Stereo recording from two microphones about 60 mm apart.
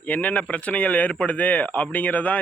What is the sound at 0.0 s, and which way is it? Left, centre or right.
A man's voice, left.